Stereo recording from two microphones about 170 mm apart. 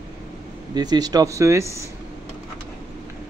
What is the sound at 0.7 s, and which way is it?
Speech, 25° right (ahead or behind).